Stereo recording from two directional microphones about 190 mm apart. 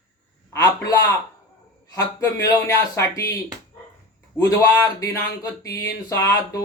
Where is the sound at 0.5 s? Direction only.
15° left (ahead or behind).